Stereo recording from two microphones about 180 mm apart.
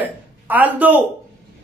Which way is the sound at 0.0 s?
10° right (ahead or behind).